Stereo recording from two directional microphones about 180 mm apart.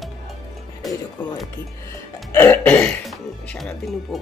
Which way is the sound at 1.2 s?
25° left (ahead or behind).